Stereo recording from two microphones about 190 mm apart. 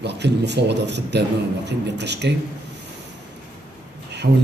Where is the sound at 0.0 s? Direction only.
65° right (ahead or behind).